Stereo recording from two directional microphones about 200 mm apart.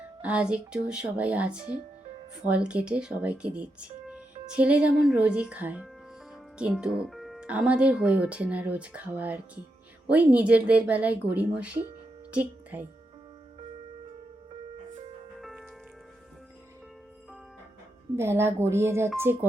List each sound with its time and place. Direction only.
0.2 s speech: 5° right (ahead or behind)
14.5 s music: 30° right (ahead or behind)
15.4 s music: centre (ahead or behind)
18.2 s speech: 10° right (ahead or behind)